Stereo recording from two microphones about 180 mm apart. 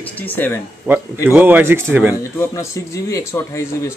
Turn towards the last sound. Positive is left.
turn(degrees=15)  # may be behind; listen again after turning